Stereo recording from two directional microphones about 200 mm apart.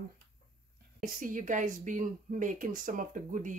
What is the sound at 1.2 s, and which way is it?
Speech, 40° right (ahead or behind).